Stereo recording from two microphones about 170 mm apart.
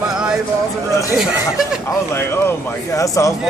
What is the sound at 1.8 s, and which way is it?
Speech, 15° left (ahead or behind).